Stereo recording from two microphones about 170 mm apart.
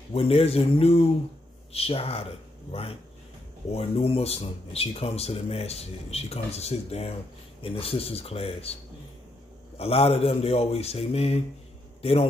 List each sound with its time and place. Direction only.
0.1 s speech: 35° left (ahead or behind)
9.8 s a man's voice: 35° left (ahead or behind)